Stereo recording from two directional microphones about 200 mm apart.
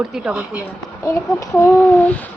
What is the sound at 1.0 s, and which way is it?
Speech, 15° left (ahead or behind).